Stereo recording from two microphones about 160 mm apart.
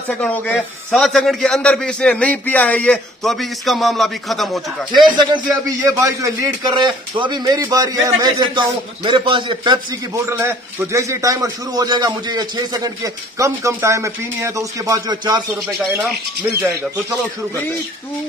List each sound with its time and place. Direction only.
0.1 s a man's voice: 10° left (ahead or behind)
4.9 s a man's voice: 30° right (ahead or behind)
10.3 s a man's voice: 15° right (ahead or behind)
16.5 s a man's voice: 20° right (ahead or behind)